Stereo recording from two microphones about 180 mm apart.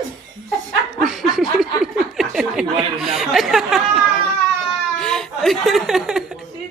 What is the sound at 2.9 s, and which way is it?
Speech, centre (ahead or behind).